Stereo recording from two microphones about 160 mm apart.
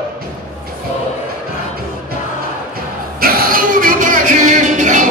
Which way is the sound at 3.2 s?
65° right (ahead or behind).